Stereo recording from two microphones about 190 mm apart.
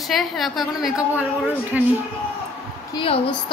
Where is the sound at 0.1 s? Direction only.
Centre (ahead or behind).